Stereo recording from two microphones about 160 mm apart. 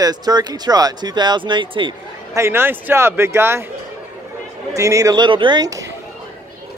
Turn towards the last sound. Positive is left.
turn(degrees=-20)  # may be behind; listen again after turning